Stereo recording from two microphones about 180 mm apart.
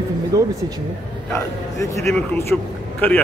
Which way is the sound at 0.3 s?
20° right (ahead or behind).